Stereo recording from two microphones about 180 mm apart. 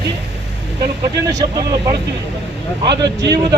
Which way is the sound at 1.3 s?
20° right (ahead or behind).